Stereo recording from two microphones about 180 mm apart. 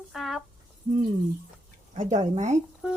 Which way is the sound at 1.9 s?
40° right (ahead or behind).